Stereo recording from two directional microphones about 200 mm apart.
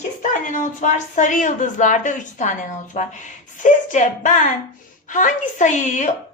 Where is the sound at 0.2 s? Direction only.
40° left (ahead or behind).